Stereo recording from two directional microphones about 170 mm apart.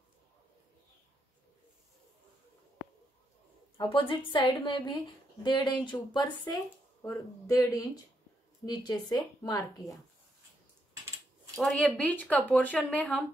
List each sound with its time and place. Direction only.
3.7 s speech: 30° left (ahead or behind)
7.0 s speech: 20° left (ahead or behind)
11.5 s a woman's voice: centre (ahead or behind)